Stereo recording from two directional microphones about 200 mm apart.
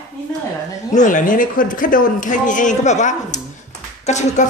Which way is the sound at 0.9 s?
40° left (ahead or behind).